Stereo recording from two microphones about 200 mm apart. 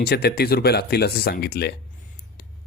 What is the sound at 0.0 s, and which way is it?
Speech, 50° left (ahead or behind).